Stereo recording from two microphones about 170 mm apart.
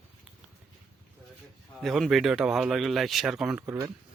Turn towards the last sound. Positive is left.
turn(degrees=-15)  # may be behind; listen again after turning